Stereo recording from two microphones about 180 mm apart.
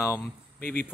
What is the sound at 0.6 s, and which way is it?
Speech, 55° left (ahead or behind).